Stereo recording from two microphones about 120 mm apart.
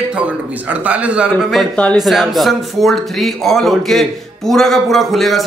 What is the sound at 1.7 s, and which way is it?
Speech, 10° left (ahead or behind).